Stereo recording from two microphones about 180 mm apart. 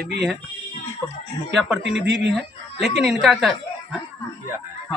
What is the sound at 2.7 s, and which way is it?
Speech, 35° left (ahead or behind).